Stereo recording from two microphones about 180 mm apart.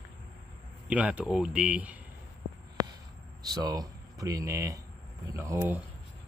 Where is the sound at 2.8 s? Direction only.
20° right (ahead or behind).